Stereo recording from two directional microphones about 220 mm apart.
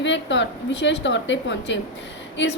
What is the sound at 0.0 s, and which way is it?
A woman's voice, 55° left (ahead or behind).